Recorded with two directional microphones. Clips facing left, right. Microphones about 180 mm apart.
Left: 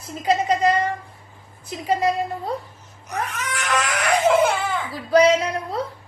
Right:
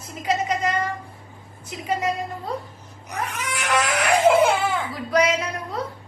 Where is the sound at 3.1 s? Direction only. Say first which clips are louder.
Left 1 dB; 10° right (ahead or behind).